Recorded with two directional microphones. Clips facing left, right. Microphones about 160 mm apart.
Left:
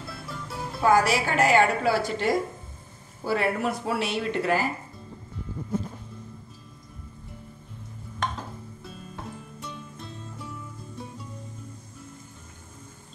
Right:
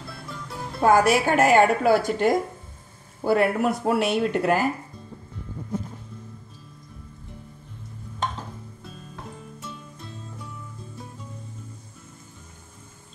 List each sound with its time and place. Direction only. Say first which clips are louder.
0.1 s music: even; centre (ahead or behind)
0.7 s speech: right 3 dB; 50° right (ahead or behind)